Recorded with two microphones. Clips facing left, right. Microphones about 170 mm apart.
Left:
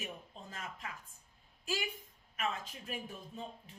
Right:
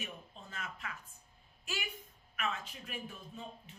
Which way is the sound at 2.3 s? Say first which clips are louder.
Left 1 dB; 25° left (ahead or behind).